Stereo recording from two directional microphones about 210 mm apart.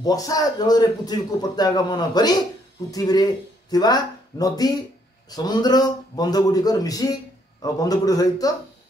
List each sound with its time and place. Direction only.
0.0 s a man's voice: 15° left (ahead or behind)